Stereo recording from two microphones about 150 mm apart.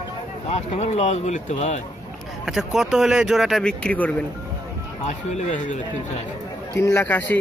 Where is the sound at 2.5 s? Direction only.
5° right (ahead or behind).